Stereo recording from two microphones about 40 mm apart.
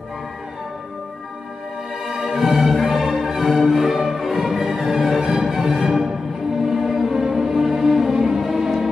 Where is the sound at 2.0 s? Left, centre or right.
Centre.